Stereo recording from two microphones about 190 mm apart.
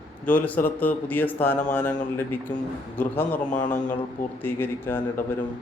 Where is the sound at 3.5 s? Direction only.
40° left (ahead or behind).